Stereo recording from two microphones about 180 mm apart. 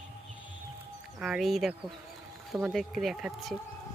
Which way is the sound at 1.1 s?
5° right (ahead or behind).